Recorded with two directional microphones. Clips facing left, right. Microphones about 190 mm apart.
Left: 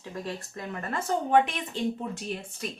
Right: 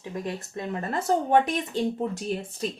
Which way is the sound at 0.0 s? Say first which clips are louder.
Right 3 dB; 20° right (ahead or behind).